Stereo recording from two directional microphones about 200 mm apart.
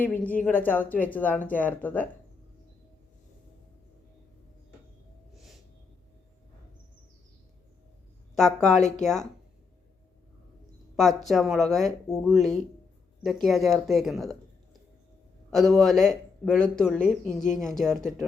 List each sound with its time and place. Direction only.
0.0 s speech: 10° left (ahead or behind)
5.3 s a sound: centre (ahead or behind)
8.4 s speech: centre (ahead or behind)
9.0 s speech: 35° left (ahead or behind)
10.9 s speech: centre (ahead or behind)